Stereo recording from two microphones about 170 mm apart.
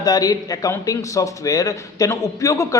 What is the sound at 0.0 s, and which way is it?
Speech, 20° left (ahead or behind).